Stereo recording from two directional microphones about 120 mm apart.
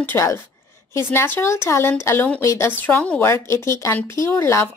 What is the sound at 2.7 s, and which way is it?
Speech, 15° left (ahead or behind).